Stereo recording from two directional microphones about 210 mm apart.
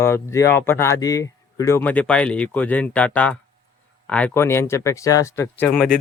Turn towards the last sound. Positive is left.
turn(degrees=5)  # may be behind; listen again after turning